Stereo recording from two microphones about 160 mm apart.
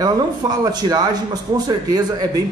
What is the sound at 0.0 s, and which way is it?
A man's voice, 25° right (ahead or behind).